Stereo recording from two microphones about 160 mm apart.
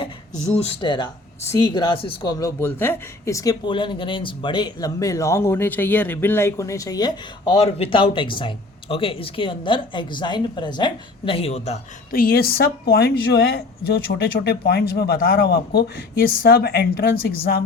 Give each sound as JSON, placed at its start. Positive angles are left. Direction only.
{"t": 0.4, "sound": "speech", "side_deg": 40}
{"t": 2.3, "sound": "speech", "side_deg": 20}
{"t": 12.1, "sound": "speech", "side_deg": 70}